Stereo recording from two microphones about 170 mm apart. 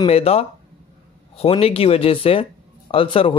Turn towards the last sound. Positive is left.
turn(degrees=30)  # may be behind; listen again after turning